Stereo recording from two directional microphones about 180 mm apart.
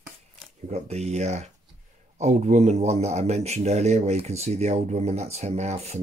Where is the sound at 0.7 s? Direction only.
40° right (ahead or behind).